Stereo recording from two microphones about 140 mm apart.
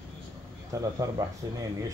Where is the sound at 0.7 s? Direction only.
25° right (ahead or behind).